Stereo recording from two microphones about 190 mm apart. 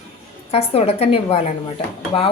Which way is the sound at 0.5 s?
30° left (ahead or behind).